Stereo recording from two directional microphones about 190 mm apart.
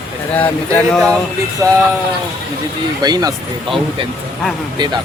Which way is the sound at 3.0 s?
20° right (ahead or behind).